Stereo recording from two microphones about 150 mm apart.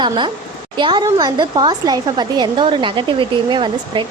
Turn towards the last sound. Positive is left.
turn(degrees=-35)  # may be behind; listen again after turning